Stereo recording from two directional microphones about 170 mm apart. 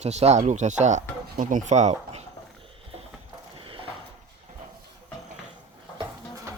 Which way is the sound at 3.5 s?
30° right (ahead or behind).